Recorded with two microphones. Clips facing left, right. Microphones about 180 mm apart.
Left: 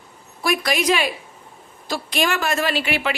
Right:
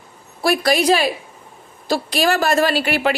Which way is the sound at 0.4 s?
35° right (ahead or behind).